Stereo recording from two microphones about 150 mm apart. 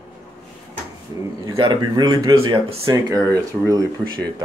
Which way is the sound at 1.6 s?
30° right (ahead or behind).